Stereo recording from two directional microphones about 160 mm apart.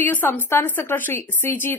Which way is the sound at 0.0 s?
10° left (ahead or behind).